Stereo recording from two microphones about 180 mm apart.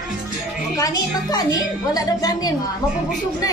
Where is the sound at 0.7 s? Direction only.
20° left (ahead or behind).